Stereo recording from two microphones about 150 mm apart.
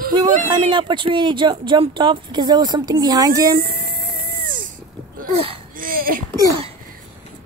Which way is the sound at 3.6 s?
85° right.